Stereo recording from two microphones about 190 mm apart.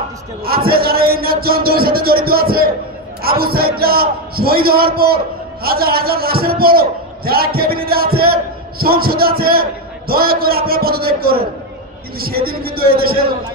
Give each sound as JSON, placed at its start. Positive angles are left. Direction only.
{"t": 0.7, "sound": "a man's voice", "side_deg": -55}